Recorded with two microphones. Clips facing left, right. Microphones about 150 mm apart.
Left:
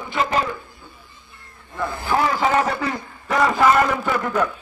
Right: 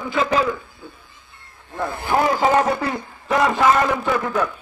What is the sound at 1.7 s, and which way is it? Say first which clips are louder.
Speech: right 1 dB; 60° right (ahead or behind).